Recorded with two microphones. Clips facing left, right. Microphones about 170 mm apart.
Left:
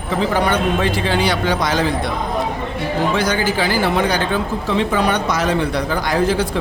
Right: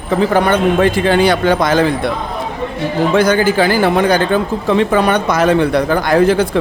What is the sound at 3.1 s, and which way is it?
Speech, 55° right (ahead or behind).